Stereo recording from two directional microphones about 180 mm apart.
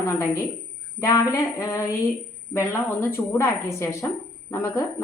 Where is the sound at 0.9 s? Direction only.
15° left (ahead or behind).